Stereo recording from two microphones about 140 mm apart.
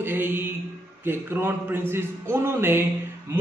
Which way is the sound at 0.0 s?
15° right (ahead or behind).